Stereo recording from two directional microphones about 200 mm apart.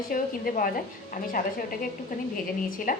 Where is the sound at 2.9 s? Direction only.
40° left (ahead or behind).